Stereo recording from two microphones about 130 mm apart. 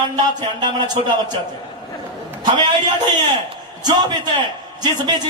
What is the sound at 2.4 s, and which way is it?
Speech, 30° right (ahead or behind).